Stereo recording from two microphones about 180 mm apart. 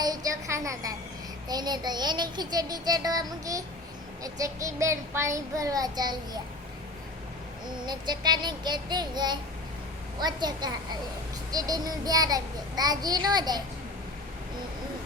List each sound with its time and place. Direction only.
0.0 s music: 20° right (ahead or behind)
1.5 s child singing: 20° right (ahead or behind)
7.9 s child singing: 25° right (ahead or behind)